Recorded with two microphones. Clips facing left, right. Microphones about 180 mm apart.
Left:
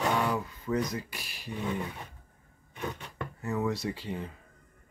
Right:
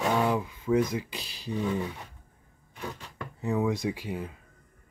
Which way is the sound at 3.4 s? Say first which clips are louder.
Right 4 dB; 15° right (ahead or behind).